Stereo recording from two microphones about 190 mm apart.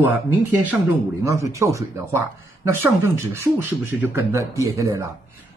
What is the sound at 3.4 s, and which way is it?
A man's voice, 10° right (ahead or behind).